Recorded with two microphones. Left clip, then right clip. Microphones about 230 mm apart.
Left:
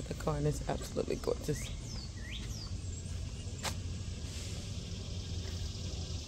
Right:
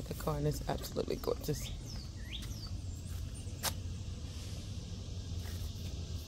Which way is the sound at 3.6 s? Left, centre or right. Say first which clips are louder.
Right 1 dB; right.